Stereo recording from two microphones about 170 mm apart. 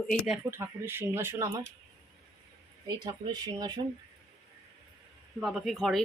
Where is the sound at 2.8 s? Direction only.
25° right (ahead or behind).